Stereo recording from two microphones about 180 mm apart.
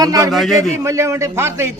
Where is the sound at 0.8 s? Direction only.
15° right (ahead or behind).